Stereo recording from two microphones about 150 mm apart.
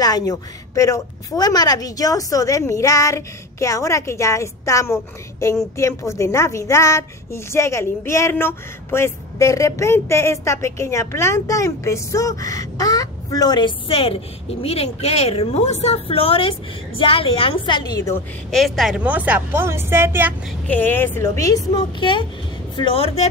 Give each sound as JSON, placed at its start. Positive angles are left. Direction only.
{"t": 0.0, "sound": "speech", "side_deg": 25}
{"t": 18.5, "sound": "a woman's voice", "side_deg": 0}
{"t": 20.6, "sound": "a woman's voice", "side_deg": 10}